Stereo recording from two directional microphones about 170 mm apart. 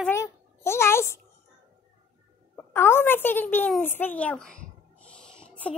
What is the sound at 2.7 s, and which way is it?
A child's voice, 15° left (ahead or behind).